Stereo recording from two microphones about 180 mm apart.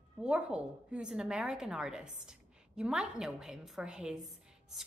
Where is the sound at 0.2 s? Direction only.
5° right (ahead or behind).